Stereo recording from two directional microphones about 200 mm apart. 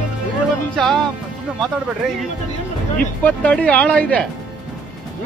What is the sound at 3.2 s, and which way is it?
Speech, 5° left (ahead or behind).